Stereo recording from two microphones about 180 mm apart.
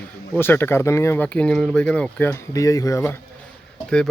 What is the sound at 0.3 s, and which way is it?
Speech, 10° left (ahead or behind).